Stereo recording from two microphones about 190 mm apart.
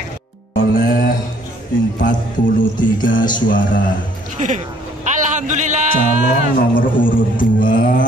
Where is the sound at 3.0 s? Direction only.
45° left (ahead or behind).